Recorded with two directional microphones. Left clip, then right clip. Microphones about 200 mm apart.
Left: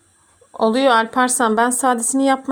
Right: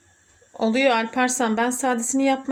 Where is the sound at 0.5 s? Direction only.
20° left (ahead or behind).